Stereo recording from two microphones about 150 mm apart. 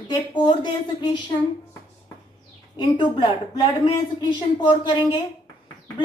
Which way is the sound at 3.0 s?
30° left (ahead or behind).